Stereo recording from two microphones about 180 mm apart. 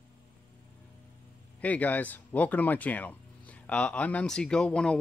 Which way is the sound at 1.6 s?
10° left (ahead or behind).